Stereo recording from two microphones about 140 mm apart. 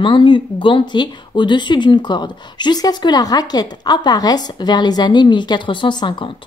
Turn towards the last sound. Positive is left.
turn(degrees=35)  # may be behind; listen again after turning